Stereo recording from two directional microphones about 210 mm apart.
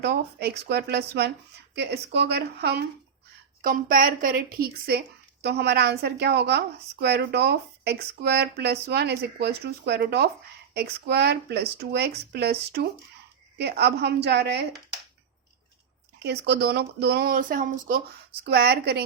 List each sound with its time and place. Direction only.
0.0 s speech: 50° right (ahead or behind)
16.2 s speech: 50° right (ahead or behind)